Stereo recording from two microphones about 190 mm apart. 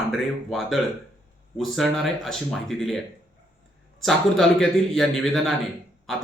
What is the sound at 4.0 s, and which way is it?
Speech, centre (ahead or behind).